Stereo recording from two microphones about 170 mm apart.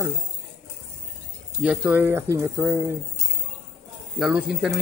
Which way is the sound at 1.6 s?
10° right (ahead or behind).